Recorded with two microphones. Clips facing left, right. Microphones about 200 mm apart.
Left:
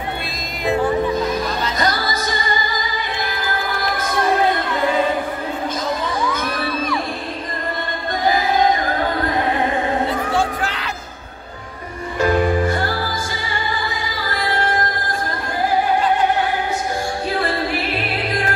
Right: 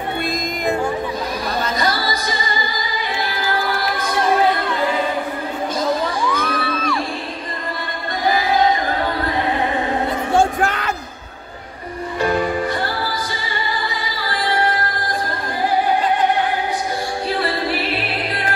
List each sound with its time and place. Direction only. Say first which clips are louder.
10.3 s music: right 4 dB; 50° right (ahead or behind)